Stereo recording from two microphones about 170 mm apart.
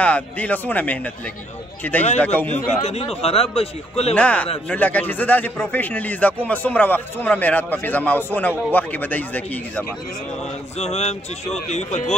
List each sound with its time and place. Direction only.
0.0 s a man's voice: 10° left (ahead or behind)
2.1 s a man's voice: 10° left (ahead or behind)
2.5 s speech: 40° left (ahead or behind)
4.1 s a man's voice: 10° left (ahead or behind)
10.8 s speech: 40° left (ahead or behind)